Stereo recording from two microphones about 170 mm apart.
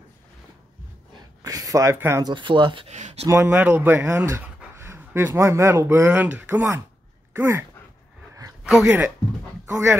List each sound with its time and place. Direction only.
1.4 s speech: 20° right (ahead or behind)
2.3 s speech: 30° right (ahead or behind)
2.9 s speech: 45° right (ahead or behind)
3.3 s speech: 15° right (ahead or behind)
8.6 s speech: 5° right (ahead or behind)